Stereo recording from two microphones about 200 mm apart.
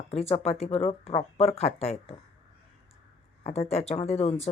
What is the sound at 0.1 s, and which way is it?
Speech, 30° left (ahead or behind).